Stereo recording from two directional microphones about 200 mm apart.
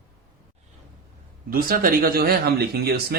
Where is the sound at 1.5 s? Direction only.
45° right (ahead or behind).